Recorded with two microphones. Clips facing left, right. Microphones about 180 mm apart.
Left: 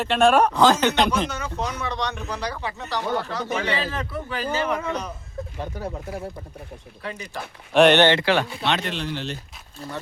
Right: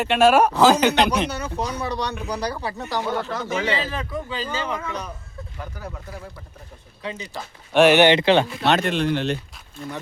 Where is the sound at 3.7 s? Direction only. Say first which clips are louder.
Right 1 dB; 15° right (ahead or behind).